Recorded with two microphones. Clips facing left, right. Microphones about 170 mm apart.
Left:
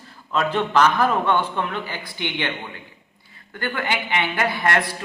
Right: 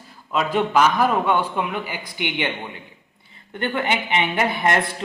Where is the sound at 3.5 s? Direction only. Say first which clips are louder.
Right 3 dB; 25° right (ahead or behind).